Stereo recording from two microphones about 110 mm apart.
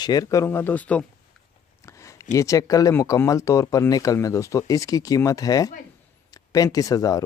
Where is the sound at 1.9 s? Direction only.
30° left (ahead or behind).